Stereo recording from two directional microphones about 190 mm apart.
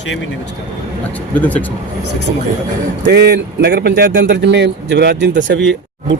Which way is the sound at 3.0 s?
60° right (ahead or behind).